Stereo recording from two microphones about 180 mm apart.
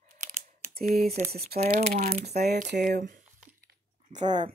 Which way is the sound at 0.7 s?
55° right (ahead or behind).